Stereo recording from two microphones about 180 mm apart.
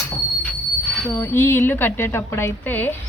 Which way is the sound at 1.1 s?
15° left (ahead or behind).